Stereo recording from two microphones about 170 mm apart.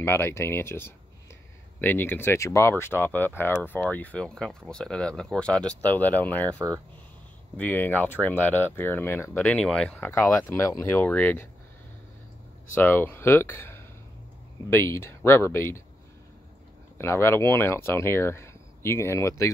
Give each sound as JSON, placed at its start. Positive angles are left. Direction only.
{"t": 0.0, "sound": "speech", "side_deg": 15}
{"t": 7.5, "sound": "speech", "side_deg": 10}
{"t": 12.7, "sound": "speech", "side_deg": 10}
{"t": 17.0, "sound": "speech", "side_deg": 15}